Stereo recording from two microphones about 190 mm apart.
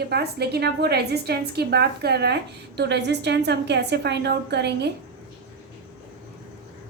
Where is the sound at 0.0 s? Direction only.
60° right (ahead or behind).